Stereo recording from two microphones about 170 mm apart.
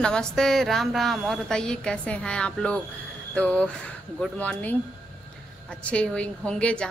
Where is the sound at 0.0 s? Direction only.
5° left (ahead or behind).